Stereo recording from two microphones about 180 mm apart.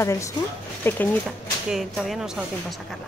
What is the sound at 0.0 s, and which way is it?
Speech, 15° left (ahead or behind).